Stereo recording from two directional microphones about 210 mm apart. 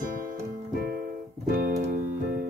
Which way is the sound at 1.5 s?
45° right (ahead or behind).